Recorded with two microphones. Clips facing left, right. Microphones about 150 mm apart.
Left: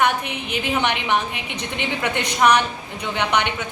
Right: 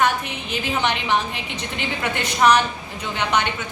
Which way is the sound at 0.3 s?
15° left (ahead or behind).